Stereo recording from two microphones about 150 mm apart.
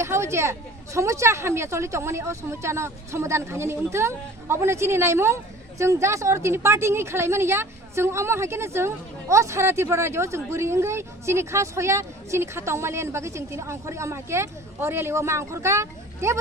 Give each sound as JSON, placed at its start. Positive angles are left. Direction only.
{"t": 0.0, "sound": "a woman's voice", "side_deg": -20}